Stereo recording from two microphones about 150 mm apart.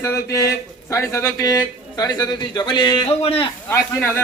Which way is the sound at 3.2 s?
40° left (ahead or behind).